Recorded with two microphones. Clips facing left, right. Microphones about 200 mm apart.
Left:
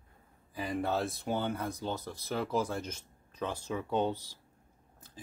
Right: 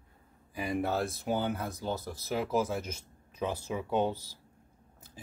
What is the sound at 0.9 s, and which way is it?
Speech, centre (ahead or behind).